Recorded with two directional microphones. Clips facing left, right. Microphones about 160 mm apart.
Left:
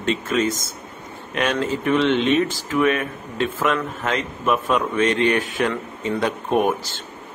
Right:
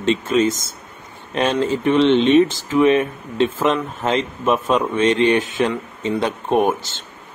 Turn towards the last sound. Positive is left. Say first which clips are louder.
# right 2 dB
turn(degrees=-25)  # may be behind; listen again after turning